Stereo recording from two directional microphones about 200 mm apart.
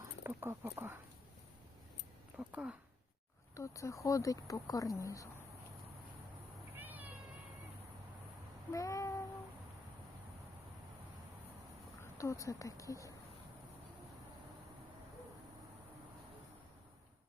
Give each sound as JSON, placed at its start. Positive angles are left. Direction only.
{"t": 0.0, "sound": "speech", "side_deg": -10}
{"t": 2.4, "sound": "speech", "side_deg": -5}
{"t": 3.5, "sound": "speech", "side_deg": 15}
{"t": 6.7, "sound": "cat", "side_deg": -10}
{"t": 8.7, "sound": "child singing", "side_deg": 15}
{"t": 12.0, "sound": "speech", "side_deg": 15}